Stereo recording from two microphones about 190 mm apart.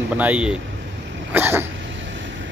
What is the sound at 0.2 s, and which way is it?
Speech, 5° right (ahead or behind).